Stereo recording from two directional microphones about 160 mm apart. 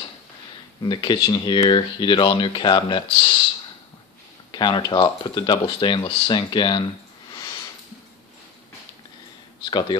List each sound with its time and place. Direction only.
0.8 s speech: 30° left (ahead or behind)
4.5 s speech: 30° left (ahead or behind)
9.7 s speech: 30° left (ahead or behind)